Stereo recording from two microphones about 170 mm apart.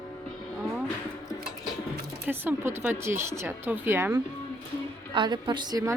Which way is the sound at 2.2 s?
10° right (ahead or behind).